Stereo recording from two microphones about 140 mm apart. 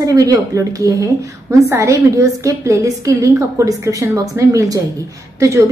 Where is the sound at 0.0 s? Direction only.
25° right (ahead or behind).